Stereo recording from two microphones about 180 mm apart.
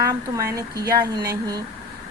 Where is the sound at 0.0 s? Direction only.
15° right (ahead or behind).